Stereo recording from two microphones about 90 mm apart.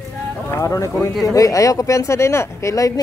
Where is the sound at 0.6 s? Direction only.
40° left (ahead or behind).